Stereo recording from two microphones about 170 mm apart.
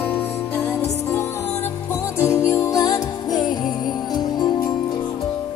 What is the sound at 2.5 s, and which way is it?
Music, 20° left (ahead or behind).